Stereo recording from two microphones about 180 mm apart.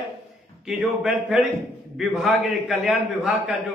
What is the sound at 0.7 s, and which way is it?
A man's voice, centre (ahead or behind).